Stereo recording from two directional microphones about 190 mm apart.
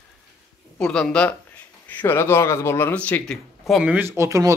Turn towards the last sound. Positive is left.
turn(degrees=-15)  # may be behind; listen again after turning